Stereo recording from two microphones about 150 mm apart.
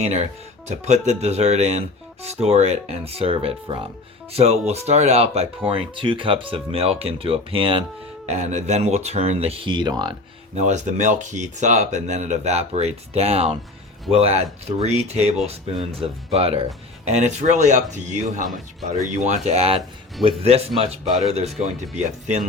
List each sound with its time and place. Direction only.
0.0 s speech: 50° right (ahead or behind)
8.3 s speech: 50° right (ahead or behind); by 10.2 s 30° right (ahead or behind)
10.5 s speech: 50° right (ahead or behind)